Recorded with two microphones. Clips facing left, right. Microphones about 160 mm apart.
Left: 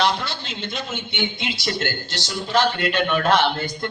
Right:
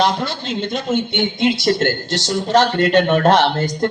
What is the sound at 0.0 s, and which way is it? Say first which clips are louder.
A man's voice: right 4 dB; 45° right (ahead or behind).